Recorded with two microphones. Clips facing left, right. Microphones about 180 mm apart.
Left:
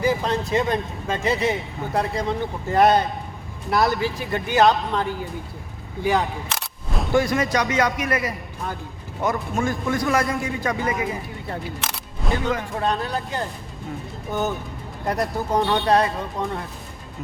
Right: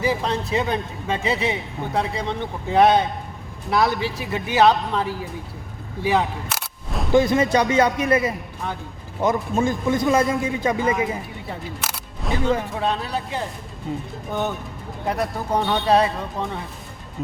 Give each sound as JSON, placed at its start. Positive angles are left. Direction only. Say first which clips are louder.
{"t": 0.0, "sound": "a man's voice", "louder": "left 1 dB", "side_deg": 0}
{"t": 6.0, "sound": "single-lens reflex camera", "louder": "right 1 dB", "side_deg": 0}
{"t": 7.1, "sound": "a man's voice", "louder": "right 4 dB", "side_deg": -25}
{"t": 11.8, "sound": "single-lens reflex camera", "louder": "even", "side_deg": 0}
{"t": 12.7, "sound": "a man's voice", "louder": "even", "side_deg": 0}
{"t": 15.0, "sound": "a man's voice", "louder": "left 1 dB", "side_deg": 0}